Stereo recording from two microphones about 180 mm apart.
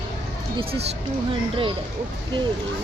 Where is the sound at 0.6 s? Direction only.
30° right (ahead or behind).